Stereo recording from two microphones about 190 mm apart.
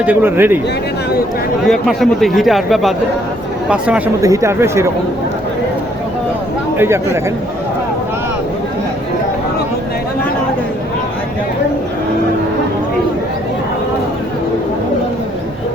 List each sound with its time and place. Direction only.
0.0 s speech: 10° right (ahead or behind)
1.6 s speech: centre (ahead or behind)
6.7 s speech: 15° right (ahead or behind)